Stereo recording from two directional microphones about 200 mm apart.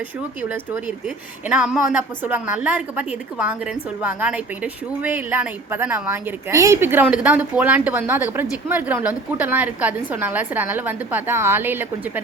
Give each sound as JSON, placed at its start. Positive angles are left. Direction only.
{"t": 0.4, "sound": "a woman's voice", "side_deg": -10}